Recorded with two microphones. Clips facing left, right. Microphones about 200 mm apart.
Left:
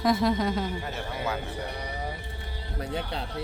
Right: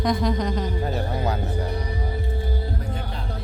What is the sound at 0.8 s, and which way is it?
Speech, 35° right (ahead or behind).